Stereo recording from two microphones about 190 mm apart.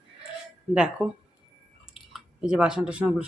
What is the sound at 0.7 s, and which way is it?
Speech, 5° right (ahead or behind).